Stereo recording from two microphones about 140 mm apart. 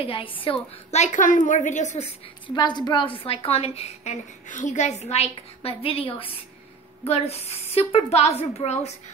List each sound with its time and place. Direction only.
0.0 s a woman's voice: 40° left (ahead or behind)
0.9 s a woman's voice: 60° left (ahead or behind)
2.4 s a woman's voice: 30° left (ahead or behind); by 8.9 s 50° left (ahead or behind)